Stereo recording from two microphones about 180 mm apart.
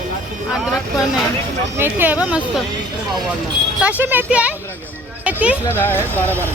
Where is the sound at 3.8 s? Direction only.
10° right (ahead or behind).